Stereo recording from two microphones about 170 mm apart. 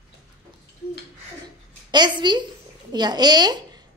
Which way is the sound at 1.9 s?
25° right (ahead or behind).